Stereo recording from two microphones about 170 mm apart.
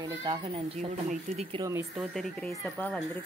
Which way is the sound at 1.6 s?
20° right (ahead or behind).